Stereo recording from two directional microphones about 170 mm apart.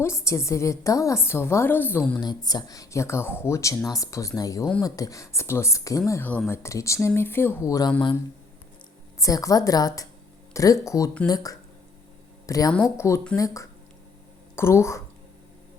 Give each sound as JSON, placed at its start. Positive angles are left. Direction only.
{"t": 0.0, "sound": "a woman's voice", "side_deg": 15}
{"t": 2.2, "sound": "a woman's voice", "side_deg": 25}
{"t": 9.2, "sound": "a woman's voice", "side_deg": 20}